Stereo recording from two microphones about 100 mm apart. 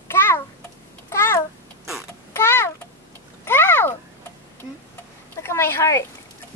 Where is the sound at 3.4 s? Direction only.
20° left (ahead or behind).